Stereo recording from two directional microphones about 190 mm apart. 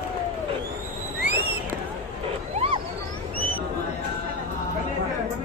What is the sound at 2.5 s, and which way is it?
Wild animals, 30° right (ahead or behind).